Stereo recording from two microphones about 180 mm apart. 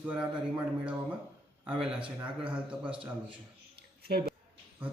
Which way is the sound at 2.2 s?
5° right (ahead or behind).